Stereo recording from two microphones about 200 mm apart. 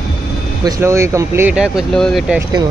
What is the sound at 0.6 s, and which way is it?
Speech, 15° right (ahead or behind).